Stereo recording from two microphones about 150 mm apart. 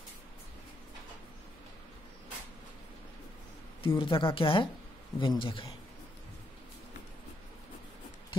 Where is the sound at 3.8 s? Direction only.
35° left (ahead or behind).